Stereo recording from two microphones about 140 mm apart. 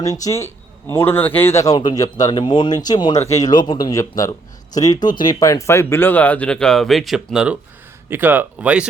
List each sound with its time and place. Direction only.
0.0 s a man's voice: 25° left (ahead or behind); by 7.5 s 5° right (ahead or behind)
8.1 s speech: 15° right (ahead or behind)